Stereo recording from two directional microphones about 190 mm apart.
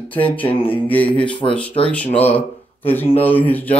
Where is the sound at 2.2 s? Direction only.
10° left (ahead or behind).